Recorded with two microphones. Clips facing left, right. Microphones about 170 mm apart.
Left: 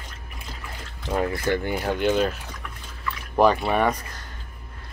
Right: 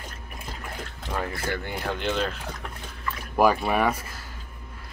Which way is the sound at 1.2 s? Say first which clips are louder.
Left 6 dB; 20° left (ahead or behind).